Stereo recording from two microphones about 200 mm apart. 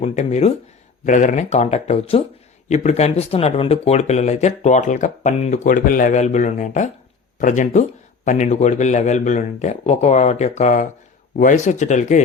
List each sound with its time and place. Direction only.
0.0 s speech: 35° left (ahead or behind)